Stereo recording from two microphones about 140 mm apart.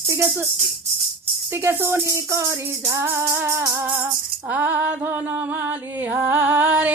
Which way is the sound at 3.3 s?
20° right (ahead or behind).